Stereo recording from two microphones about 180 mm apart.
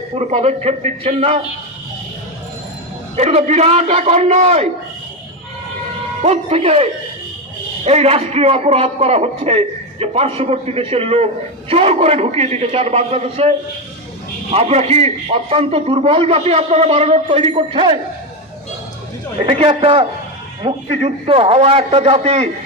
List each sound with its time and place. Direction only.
0.1 s a man's voice: 35° right (ahead or behind)
3.2 s a man's voice: 40° right (ahead or behind)
6.2 s a man's voice: 35° right (ahead or behind)
19.7 s a man's voice: 30° right (ahead or behind)